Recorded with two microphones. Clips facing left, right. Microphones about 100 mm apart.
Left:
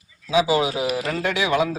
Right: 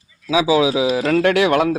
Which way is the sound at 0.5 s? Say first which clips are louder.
Right 5 dB; 90° right.